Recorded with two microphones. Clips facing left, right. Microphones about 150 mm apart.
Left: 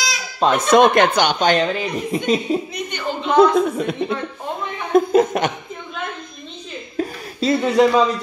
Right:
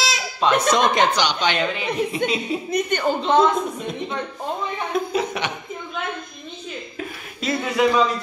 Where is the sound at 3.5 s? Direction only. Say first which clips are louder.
Left 7 dB; 75° left (ahead or behind).